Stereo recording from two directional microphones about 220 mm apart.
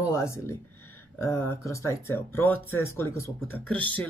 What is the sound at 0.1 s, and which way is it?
Speech, 15° left (ahead or behind).